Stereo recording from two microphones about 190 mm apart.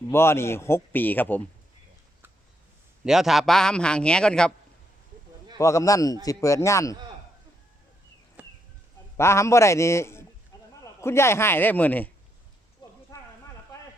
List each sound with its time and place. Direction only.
0.1 s speech: 15° left (ahead or behind)
3.0 s speech: 5° right (ahead or behind)
5.5 s speech: 15° left (ahead or behind)
8.4 s a sound: 5° right (ahead or behind)
9.1 s speech: 15° left (ahead or behind)
10.5 s a sound: 20° left (ahead or behind)
11.0 s speech: 15° left (ahead or behind)
12.8 s clip-clop: 25° left (ahead or behind)